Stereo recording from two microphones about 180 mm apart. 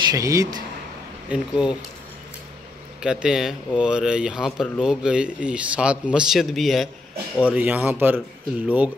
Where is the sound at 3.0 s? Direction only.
5° right (ahead or behind).